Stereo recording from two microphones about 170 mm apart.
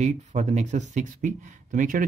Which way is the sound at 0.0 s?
45° right (ahead or behind).